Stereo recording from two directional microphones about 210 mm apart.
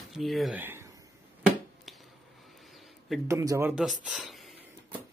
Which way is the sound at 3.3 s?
15° right (ahead or behind).